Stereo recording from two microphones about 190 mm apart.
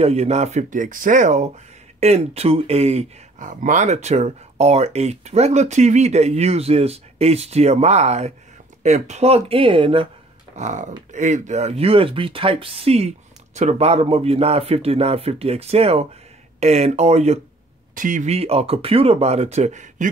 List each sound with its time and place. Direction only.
0.0 s speech: 35° right (ahead or behind)
10.5 s speech: 40° right (ahead or behind)